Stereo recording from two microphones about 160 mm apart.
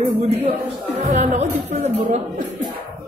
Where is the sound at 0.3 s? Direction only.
40° right (ahead or behind).